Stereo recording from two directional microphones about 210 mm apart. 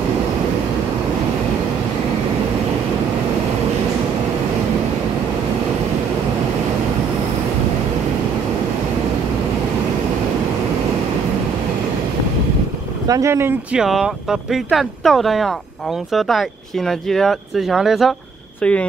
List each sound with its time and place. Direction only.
13.0 s speech: 15° right (ahead or behind); by 18.9 s 5° left (ahead or behind)